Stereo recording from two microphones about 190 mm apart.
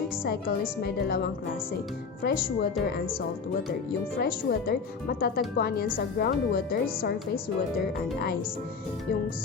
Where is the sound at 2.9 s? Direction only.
50° left (ahead or behind).